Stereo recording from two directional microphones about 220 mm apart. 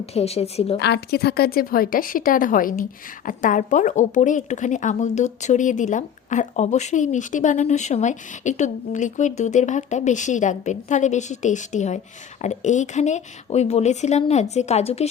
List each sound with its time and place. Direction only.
0.0 s a woman's voice: 30° left (ahead or behind)
0.8 s a woman's voice: 45° left (ahead or behind); by 15.0 s 30° left (ahead or behind)